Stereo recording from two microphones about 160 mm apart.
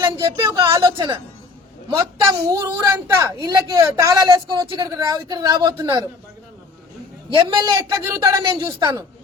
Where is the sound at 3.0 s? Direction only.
25° right (ahead or behind).